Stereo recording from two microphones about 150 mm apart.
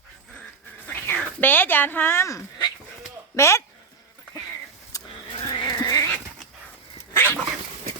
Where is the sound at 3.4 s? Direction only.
20° left (ahead or behind).